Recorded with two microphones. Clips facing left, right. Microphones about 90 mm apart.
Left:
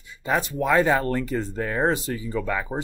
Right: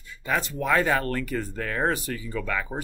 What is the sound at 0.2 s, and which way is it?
Speech, 20° left (ahead or behind).